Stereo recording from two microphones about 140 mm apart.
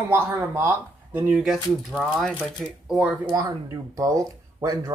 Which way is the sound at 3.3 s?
25° right (ahead or behind).